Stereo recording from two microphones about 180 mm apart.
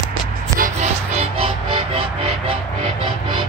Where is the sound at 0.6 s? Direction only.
40° right (ahead or behind).